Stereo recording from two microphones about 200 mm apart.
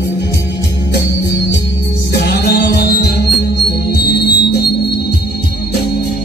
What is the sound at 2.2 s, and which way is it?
Music, 55° left (ahead or behind).